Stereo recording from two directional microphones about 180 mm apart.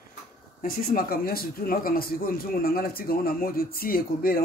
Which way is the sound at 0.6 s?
55° left (ahead or behind).